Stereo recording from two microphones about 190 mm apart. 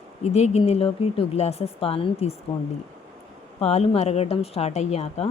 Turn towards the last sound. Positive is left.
turn(degrees=35)  # may be behind; listen again after turning